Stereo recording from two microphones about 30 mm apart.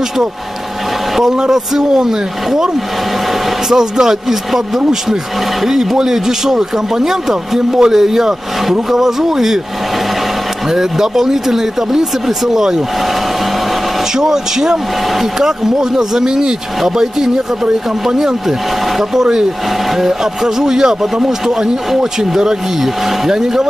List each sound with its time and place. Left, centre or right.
1.5 s speech: centre
3.7 s speech: centre
10.7 s speech: centre
14.1 s speech: centre
20.4 s speech: centre
23.2 s speech: centre